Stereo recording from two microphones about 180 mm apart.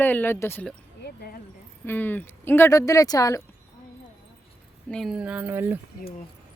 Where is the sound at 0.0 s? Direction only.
10° left (ahead or behind).